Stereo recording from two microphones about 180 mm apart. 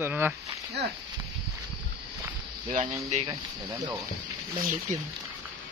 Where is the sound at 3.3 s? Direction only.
20° right (ahead or behind).